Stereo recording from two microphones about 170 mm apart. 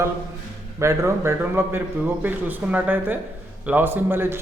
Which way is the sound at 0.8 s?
15° right (ahead or behind).